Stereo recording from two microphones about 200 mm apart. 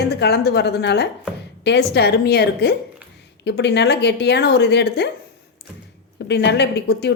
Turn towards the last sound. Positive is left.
turn(degrees=55)  # may be behind; listen again after turning